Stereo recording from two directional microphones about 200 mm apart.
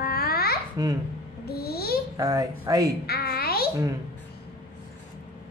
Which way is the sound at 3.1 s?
50° left (ahead or behind).